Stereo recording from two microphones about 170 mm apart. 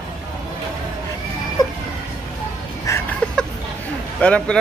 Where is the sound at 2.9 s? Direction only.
20° left (ahead or behind).